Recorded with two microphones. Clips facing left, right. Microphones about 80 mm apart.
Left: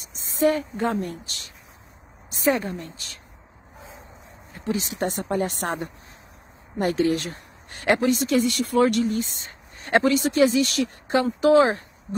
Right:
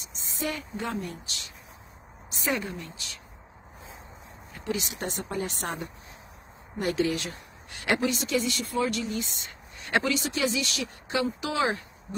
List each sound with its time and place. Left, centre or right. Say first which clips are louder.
0.0 s a woman's voice: left 12 dB; left
4.6 s speech: left 6 dB; left